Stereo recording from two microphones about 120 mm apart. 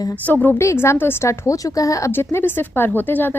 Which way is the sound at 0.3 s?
15° left (ahead or behind).